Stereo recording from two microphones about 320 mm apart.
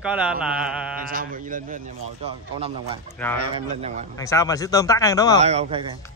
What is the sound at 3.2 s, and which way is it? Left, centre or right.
Speech, centre.